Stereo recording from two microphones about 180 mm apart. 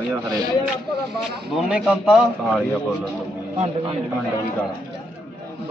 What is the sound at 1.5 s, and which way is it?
A man's voice, 5° right (ahead or behind).